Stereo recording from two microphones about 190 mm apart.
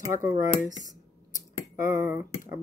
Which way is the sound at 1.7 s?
40° left (ahead or behind).